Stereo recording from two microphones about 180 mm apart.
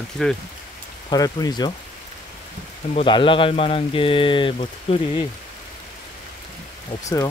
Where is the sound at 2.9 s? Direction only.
30° left (ahead or behind).